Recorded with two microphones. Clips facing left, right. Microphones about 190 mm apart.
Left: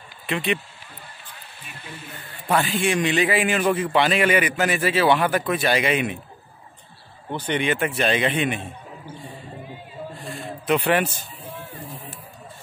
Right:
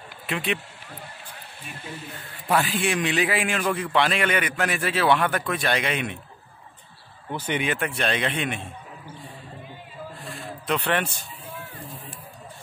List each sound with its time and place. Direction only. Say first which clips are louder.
0.3 s a man's voice: left 3 dB; centre (ahead or behind)
2.1 s a man's voice: left 1 dB; centre (ahead or behind)
7.2 s a man's voice: left 3 dB; 5° right (ahead or behind)
10.2 s a sound: left 5 dB; centre (ahead or behind)